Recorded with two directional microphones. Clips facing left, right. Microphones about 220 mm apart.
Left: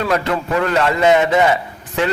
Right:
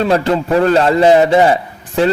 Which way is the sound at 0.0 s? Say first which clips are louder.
Right 5 dB; 30° right (ahead or behind).